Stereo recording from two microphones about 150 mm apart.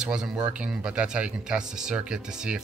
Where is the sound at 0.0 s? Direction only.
5° right (ahead or behind).